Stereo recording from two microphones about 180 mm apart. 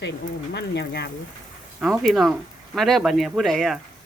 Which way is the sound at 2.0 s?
Centre (ahead or behind).